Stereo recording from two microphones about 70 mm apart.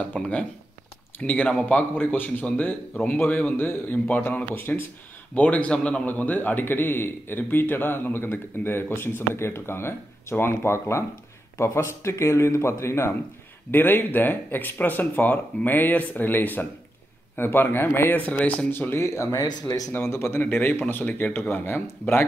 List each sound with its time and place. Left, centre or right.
0.0 s a man's voice: centre; by 13.1 s left
13.7 s speech: left
19.0 s a man's voice: left
19.4 s speech: left
19.9 s a man's voice: left
20.4 s speech: left